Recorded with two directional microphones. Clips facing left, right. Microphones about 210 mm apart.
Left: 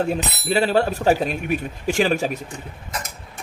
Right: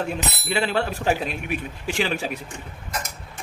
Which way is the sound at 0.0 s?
40° left (ahead or behind).